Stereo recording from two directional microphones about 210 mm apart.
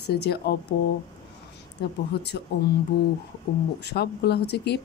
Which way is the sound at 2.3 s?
50° left (ahead or behind).